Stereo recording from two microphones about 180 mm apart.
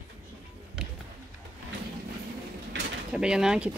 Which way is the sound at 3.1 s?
5° right (ahead or behind).